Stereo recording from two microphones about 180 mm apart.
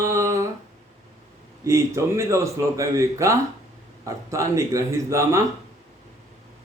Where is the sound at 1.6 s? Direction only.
15° right (ahead or behind).